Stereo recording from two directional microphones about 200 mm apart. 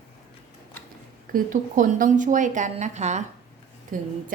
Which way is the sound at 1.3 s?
45° right (ahead or behind).